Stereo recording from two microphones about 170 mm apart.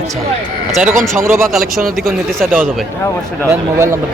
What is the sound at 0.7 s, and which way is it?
Speech, 5° right (ahead or behind).